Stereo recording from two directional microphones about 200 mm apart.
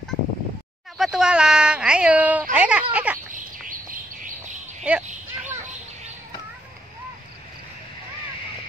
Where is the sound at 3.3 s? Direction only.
45° right (ahead or behind).